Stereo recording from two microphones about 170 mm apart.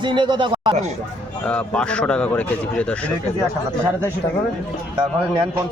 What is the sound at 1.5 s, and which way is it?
Speech, 5° left (ahead or behind).